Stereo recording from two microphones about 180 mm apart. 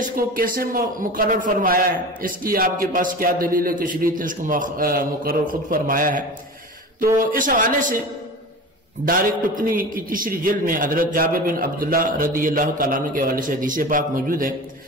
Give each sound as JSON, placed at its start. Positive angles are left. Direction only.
{"t": 0.0, "sound": "a man's voice", "side_deg": -50}
{"t": 7.3, "sound": "a man's voice", "side_deg": -50}
{"t": 9.0, "sound": "a man's voice", "side_deg": -50}